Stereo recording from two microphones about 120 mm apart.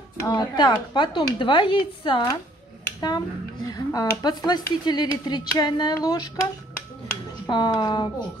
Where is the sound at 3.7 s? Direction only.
30° left (ahead or behind).